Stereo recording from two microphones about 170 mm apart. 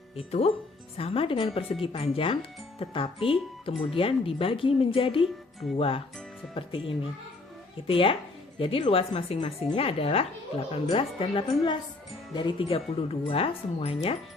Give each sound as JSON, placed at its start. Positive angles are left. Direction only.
{"t": 0.2, "sound": "speech", "side_deg": 35}